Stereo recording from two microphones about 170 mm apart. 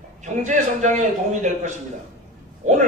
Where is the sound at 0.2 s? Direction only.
45° right (ahead or behind).